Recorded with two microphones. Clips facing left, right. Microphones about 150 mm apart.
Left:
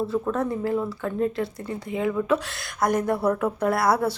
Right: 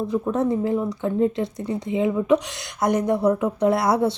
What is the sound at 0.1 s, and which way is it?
Speech, 20° right (ahead or behind).